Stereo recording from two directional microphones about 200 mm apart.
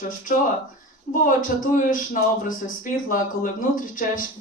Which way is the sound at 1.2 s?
45° left (ahead or behind).